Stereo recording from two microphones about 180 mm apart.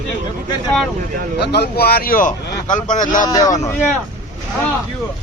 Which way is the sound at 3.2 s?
20° left (ahead or behind).